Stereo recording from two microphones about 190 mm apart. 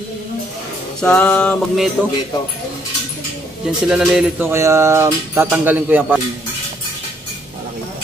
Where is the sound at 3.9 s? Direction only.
5° right (ahead or behind).